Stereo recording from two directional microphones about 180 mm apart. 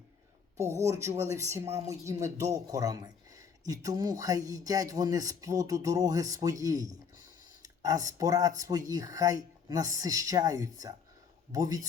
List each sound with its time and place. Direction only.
0.5 s speech: 15° right (ahead or behind)